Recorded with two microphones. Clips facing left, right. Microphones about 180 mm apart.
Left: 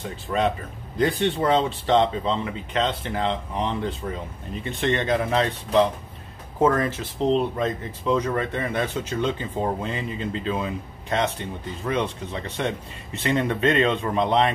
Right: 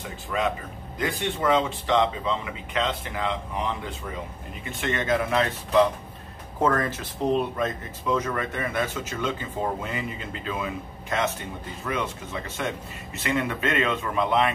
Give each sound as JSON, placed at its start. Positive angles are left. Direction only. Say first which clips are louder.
{"t": 0.9, "sound": "speech", "louder": "left 6 dB", "side_deg": 35}